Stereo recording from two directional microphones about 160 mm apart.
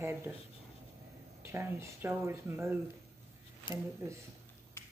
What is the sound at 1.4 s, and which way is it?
Speech, 15° right (ahead or behind).